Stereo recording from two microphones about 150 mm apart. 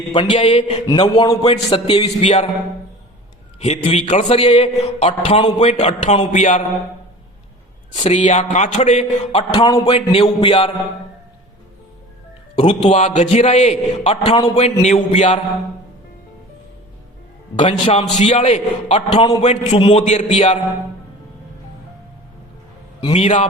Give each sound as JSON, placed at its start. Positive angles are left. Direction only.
{"t": 0.1, "sound": "a man's voice", "side_deg": 35}
{"t": 3.6, "sound": "a man's voice", "side_deg": 45}
{"t": 8.1, "sound": "a man's voice", "side_deg": 50}
{"t": 9.6, "sound": "speech", "side_deg": 25}
{"t": 9.9, "sound": "a man's voice", "side_deg": 40}
{"t": 12.5, "sound": "a man's voice", "side_deg": 40}
{"t": 17.6, "sound": "a man's voice", "side_deg": 40}
{"t": 20.0, "sound": "a man's voice", "side_deg": 50}
{"t": 23.0, "sound": "a man's voice", "side_deg": 40}